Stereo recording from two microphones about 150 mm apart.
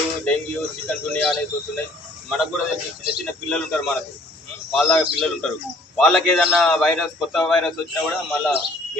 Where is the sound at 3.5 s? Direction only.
5° left (ahead or behind).